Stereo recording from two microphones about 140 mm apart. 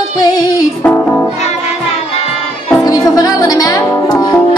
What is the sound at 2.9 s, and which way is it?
Music, 25° left (ahead or behind).